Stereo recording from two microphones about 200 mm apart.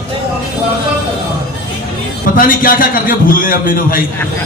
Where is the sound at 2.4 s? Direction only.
45° left (ahead or behind).